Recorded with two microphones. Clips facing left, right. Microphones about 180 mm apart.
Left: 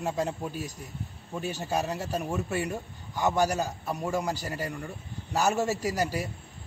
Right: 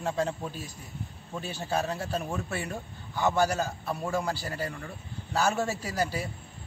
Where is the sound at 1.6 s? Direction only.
15° left (ahead or behind).